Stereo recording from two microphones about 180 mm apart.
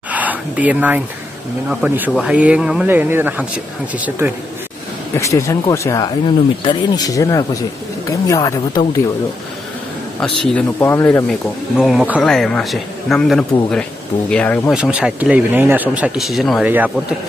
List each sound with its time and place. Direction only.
0.1 s a sound: 10° right (ahead or behind)
1.7 s speech: 5° right (ahead or behind)
5.1 s speech: 15° left (ahead or behind)
10.2 s speech: 5° left (ahead or behind)
11.2 s speech: centre (ahead or behind)
14.7 s speech: 5° right (ahead or behind)